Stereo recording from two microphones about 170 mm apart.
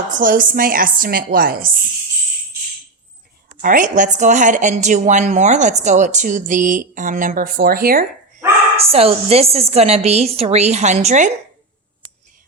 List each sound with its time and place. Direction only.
0.1 s speech: 55° right (ahead or behind)
3.6 s speech: 55° right (ahead or behind)
8.8 s a woman's voice: 35° right (ahead or behind)